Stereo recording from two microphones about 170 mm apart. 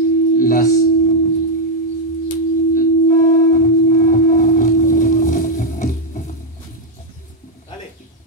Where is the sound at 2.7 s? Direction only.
50° left (ahead or behind).